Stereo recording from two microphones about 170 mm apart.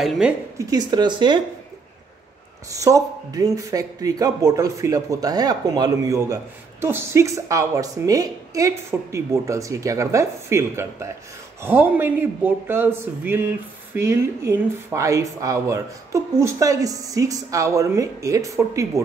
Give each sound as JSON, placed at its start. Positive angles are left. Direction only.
{"t": 0.0, "sound": "a woman's voice", "side_deg": 0}
{"t": 0.6, "sound": "speech", "side_deg": -20}
{"t": 2.8, "sound": "speech", "side_deg": -20}